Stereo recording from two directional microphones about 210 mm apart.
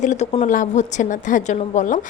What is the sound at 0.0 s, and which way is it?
A woman's voice, 35° left (ahead or behind).